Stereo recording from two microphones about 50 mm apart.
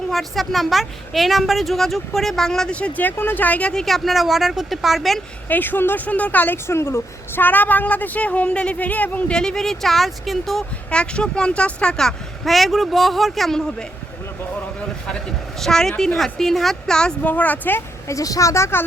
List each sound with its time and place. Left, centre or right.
0.1 s a woman's voice: centre
2.7 s speech: left
3.0 s speech: left
3.8 s a woman's voice: centre
5.5 s speech: left
6.1 s speech: left
6.7 s a woman's voice: left
7.4 s speech: left
9.3 s a woman's voice: centre
10.9 s speech: left
12.5 s a woman's voice: centre
17.2 s speech: left
18.1 s speech: left